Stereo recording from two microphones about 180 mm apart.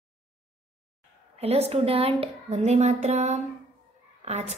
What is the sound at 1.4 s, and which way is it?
A woman's voice, 35° right (ahead or behind).